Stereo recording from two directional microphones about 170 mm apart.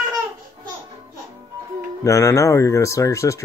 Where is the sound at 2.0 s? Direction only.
15° left (ahead or behind).